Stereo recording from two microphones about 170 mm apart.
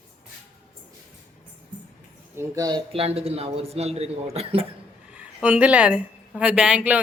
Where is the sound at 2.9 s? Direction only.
35° right (ahead or behind).